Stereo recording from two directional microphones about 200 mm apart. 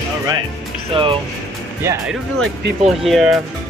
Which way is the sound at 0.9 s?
25° right (ahead or behind).